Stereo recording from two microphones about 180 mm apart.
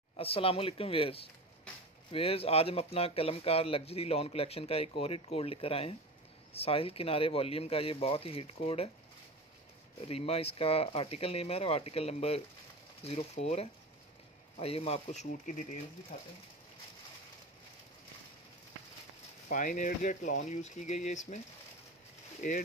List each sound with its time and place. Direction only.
0.2 s speech: 30° left (ahead or behind)
10.0 s speech: 35° left (ahead or behind)
19.5 s speech: 45° left (ahead or behind)
22.4 s speech: 45° left (ahead or behind)